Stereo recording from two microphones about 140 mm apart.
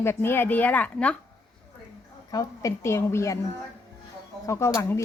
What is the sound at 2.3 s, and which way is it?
Speech, 25° left (ahead or behind).